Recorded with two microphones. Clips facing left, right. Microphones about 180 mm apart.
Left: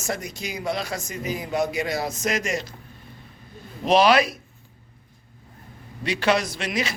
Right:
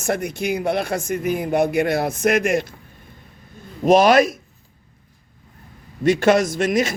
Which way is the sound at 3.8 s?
45° right (ahead or behind).